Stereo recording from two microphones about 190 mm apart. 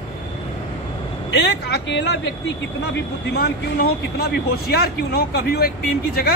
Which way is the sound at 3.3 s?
55° left (ahead or behind).